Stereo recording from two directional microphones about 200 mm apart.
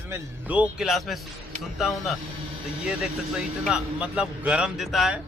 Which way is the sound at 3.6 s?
5° right (ahead or behind).